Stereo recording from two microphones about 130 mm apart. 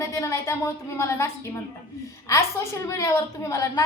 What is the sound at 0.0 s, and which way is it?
A woman's voice, 25° left (ahead or behind).